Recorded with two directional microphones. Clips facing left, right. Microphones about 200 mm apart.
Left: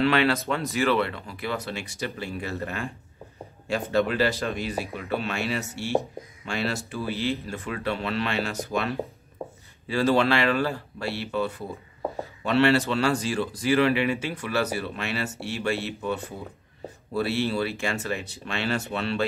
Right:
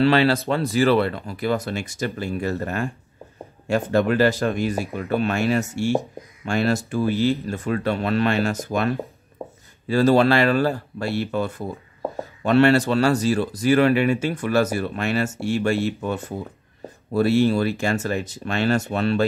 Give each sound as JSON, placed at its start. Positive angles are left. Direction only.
{"t": 0.0, "sound": "speech", "side_deg": -35}
{"t": 9.4, "sound": "a sound", "side_deg": -5}
{"t": 9.8, "sound": "speech", "side_deg": -40}